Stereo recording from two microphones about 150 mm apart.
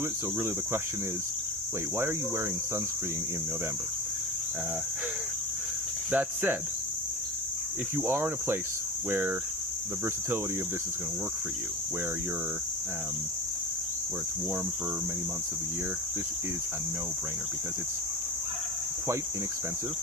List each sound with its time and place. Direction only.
6.1 s speech: 10° right (ahead or behind)
7.9 s speech: 15° right (ahead or behind)